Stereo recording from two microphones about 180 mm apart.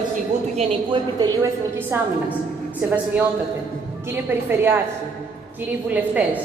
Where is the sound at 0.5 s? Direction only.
25° right (ahead or behind).